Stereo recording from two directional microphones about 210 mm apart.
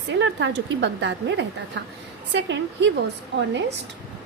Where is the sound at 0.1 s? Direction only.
60° right (ahead or behind).